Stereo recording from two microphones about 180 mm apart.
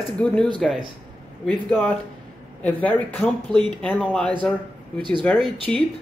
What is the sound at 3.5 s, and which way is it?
Speech, 25° right (ahead or behind).